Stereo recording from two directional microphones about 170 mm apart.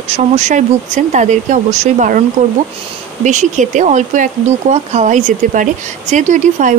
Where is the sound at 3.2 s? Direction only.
45° right (ahead or behind).